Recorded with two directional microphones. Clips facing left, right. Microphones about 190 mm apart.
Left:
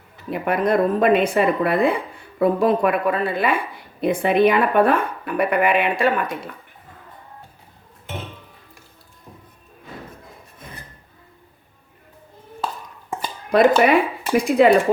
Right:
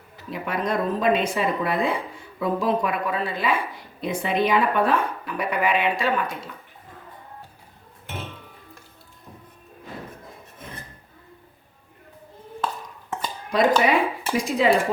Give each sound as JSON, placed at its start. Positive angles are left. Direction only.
{"t": 0.3, "sound": "speech", "side_deg": 55}
{"t": 13.5, "sound": "speech", "side_deg": 60}